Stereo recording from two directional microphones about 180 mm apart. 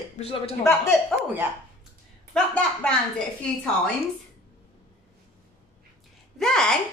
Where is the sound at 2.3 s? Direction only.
5° left (ahead or behind).